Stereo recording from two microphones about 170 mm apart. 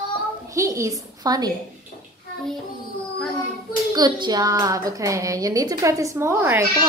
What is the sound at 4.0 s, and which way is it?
A woman's voice, 25° right (ahead or behind).